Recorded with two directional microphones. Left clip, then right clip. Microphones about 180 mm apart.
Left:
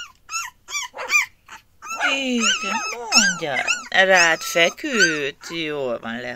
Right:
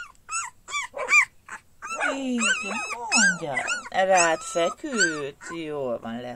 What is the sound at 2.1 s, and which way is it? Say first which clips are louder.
Speech: left 6 dB; 10° left (ahead or behind).